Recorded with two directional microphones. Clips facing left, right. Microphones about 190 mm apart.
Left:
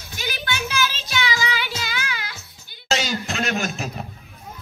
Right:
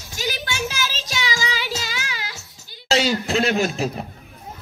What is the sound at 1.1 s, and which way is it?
Music, 40° right (ahead or behind).